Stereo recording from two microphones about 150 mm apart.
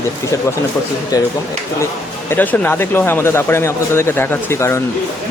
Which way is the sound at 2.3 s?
15° left (ahead or behind).